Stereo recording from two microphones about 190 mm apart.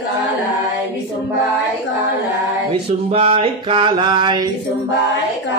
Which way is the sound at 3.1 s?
30° right (ahead or behind).